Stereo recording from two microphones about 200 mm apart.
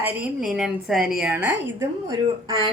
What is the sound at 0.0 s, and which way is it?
Speech, 5° right (ahead or behind).